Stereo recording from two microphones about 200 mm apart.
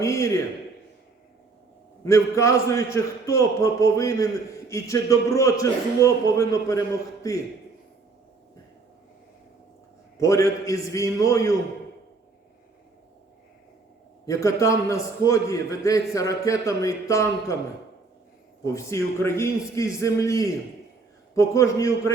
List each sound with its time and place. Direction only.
0.0 s a man's voice: 15° left (ahead or behind)
2.0 s a man's voice: 15° left (ahead or behind)
10.2 s a man's voice: 15° left (ahead or behind)
14.3 s a man's voice: 15° left (ahead or behind)
18.6 s a man's voice: 15° left (ahead or behind)